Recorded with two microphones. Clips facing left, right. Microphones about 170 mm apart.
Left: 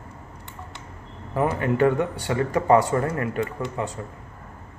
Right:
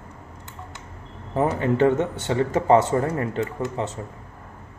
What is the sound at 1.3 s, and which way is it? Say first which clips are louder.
A man's voice: right 1 dB; 25° right (ahead or behind).